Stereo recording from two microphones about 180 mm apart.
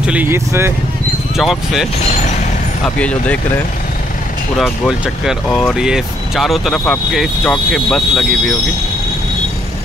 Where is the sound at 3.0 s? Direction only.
5° left (ahead or behind).